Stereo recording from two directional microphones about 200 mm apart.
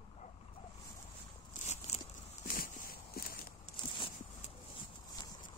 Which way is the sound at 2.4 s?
45° left (ahead or behind).